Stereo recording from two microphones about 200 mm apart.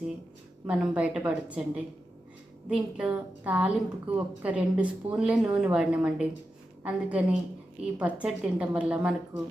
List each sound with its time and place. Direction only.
0.7 s a woman's voice: 5° right (ahead or behind)